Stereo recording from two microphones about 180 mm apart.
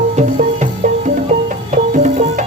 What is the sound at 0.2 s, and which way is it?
Music, 40° right (ahead or behind).